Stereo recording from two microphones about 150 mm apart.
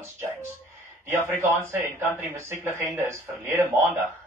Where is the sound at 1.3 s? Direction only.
15° right (ahead or behind).